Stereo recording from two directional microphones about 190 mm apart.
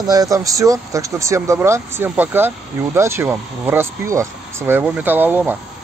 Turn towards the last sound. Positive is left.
turn(degrees=-10)  # may be behind; listen again after turning